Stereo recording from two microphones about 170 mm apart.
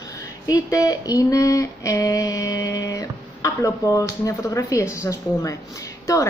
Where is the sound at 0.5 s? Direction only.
20° left (ahead or behind).